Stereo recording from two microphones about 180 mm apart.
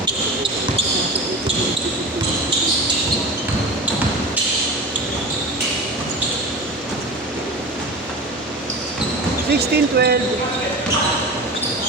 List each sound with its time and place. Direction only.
9.6 s speech: 65° right (ahead or behind)